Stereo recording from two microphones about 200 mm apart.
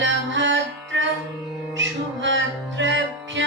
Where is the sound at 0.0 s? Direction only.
65° right (ahead or behind).